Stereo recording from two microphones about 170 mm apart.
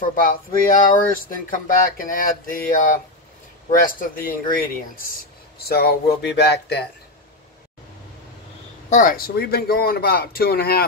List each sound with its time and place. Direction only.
0.0 s speech: 55° left (ahead or behind)
5.6 s speech: 65° left (ahead or behind)
8.9 s speech: 55° left (ahead or behind)